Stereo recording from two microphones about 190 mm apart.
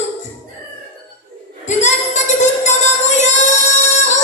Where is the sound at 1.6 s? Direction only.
40° left (ahead or behind).